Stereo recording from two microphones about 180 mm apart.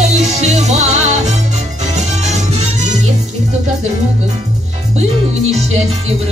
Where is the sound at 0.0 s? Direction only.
40° right (ahead or behind).